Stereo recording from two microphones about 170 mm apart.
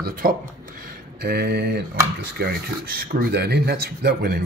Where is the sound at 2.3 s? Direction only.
65° right (ahead or behind).